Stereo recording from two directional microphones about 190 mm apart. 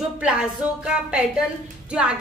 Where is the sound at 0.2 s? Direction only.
5° right (ahead or behind).